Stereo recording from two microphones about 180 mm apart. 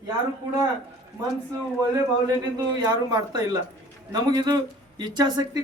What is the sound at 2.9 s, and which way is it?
A man's voice, 25° right (ahead or behind).